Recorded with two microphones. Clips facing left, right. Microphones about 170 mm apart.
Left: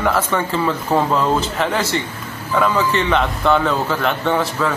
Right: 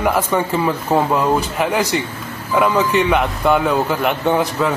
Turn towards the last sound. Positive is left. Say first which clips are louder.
# right 2 dB
turn(degrees=-15)  # may be behind; listen again after turning